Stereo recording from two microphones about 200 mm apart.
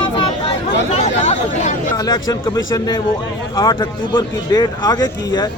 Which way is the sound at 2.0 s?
15° left (ahead or behind).